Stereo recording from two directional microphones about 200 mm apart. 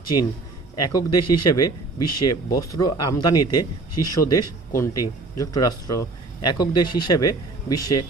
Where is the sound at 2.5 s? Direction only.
20° left (ahead or behind).